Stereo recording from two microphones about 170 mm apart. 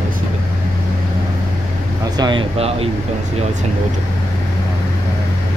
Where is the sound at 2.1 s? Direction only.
30° right (ahead or behind).